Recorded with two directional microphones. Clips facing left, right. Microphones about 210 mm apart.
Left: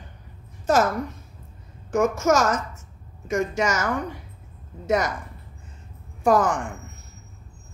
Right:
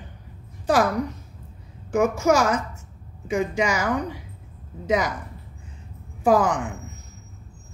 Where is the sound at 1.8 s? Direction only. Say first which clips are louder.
Right 1 dB; 15° right (ahead or behind).